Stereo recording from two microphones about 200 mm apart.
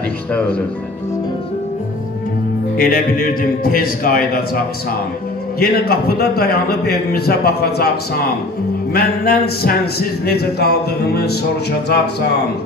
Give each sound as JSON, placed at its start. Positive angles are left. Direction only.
{"t": 0.3, "sound": "speech", "side_deg": 5}
{"t": 2.8, "sound": "speech", "side_deg": 45}
{"t": 5.6, "sound": "speech", "side_deg": 50}
{"t": 8.9, "sound": "speech", "side_deg": 50}